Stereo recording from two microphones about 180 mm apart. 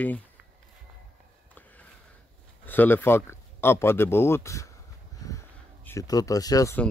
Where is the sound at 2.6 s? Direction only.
10° left (ahead or behind).